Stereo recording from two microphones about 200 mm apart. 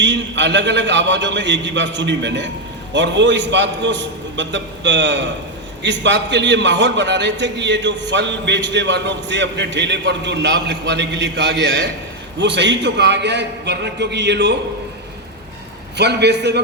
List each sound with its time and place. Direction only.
0.0 s a man's voice: 60° right (ahead or behind)
16.0 s a man's voice: 55° right (ahead or behind)